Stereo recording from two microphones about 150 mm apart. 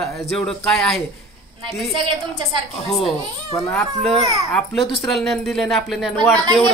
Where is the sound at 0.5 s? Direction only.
5° left (ahead or behind).